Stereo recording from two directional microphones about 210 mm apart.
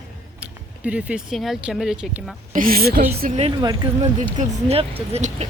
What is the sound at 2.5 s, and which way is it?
Speech, 40° right (ahead or behind).